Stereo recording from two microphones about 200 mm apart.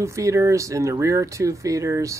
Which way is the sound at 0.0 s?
15° right (ahead or behind).